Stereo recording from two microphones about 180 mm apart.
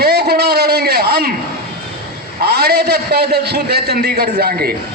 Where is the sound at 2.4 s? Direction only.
60° right (ahead or behind).